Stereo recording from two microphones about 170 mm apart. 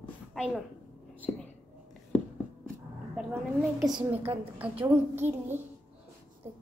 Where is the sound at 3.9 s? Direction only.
25° right (ahead or behind).